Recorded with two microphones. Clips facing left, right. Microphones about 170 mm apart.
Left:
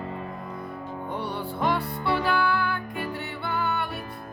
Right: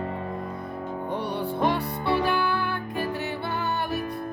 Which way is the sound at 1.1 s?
15° right (ahead or behind).